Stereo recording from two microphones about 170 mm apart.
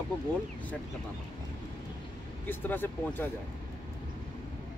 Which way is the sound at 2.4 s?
10° left (ahead or behind).